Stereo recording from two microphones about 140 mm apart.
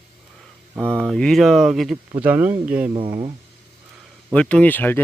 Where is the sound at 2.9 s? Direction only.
35° right (ahead or behind).